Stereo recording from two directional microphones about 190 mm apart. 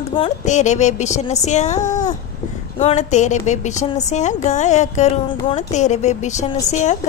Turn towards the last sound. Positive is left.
turn(degrees=40)  # may be behind; listen again after turning